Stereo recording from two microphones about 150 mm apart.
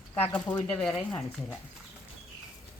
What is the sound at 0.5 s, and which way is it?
Speech, 10° left (ahead or behind).